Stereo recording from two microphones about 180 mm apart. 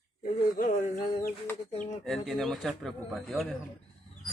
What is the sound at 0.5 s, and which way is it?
Speech, 50° left (ahead or behind).